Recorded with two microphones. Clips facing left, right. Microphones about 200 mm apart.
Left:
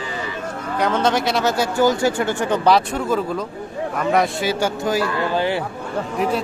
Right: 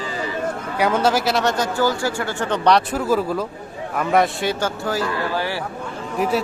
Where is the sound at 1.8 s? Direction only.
20° left (ahead or behind); by 4.6 s centre (ahead or behind).